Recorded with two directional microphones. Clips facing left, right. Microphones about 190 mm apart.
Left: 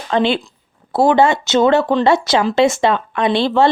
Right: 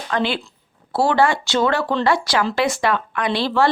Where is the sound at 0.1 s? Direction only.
25° left (ahead or behind).